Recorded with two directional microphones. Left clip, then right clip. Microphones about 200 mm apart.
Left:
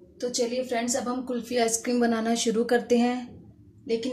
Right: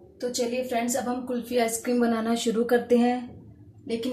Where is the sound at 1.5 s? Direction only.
15° left (ahead or behind).